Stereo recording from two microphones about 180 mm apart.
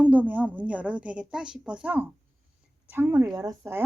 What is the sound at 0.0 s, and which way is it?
Speech, 10° right (ahead or behind).